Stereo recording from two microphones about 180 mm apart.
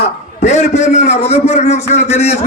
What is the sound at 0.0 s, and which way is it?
A man's voice, 40° left (ahead or behind).